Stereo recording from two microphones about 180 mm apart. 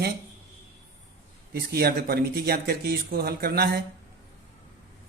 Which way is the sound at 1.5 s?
60° right (ahead or behind).